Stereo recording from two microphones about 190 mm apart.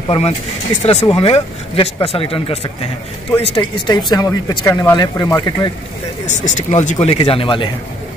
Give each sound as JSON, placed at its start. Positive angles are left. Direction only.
{"t": 0.1, "sound": "speech", "side_deg": 35}
{"t": 6.2, "sound": "speech", "side_deg": 40}